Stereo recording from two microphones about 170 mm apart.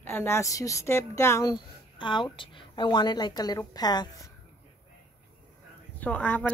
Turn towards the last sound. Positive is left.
turn(degrees=10)  # may be behind; listen again after turning